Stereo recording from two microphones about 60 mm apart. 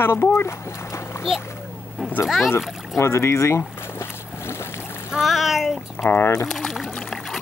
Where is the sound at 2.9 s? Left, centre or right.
Left.